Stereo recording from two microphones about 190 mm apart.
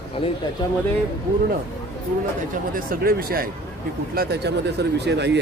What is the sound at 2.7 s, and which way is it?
Speech, 50° right (ahead or behind).